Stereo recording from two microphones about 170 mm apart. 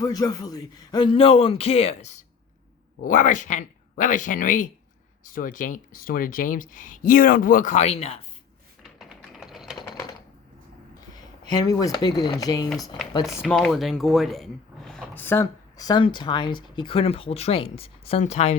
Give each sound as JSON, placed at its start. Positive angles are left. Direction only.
{"t": 0.0, "sound": "speech", "side_deg": 20}
{"t": 8.8, "sound": "typing", "side_deg": 0}
{"t": 11.4, "sound": "speech", "side_deg": 20}
{"t": 13.4, "sound": "speech", "side_deg": 0}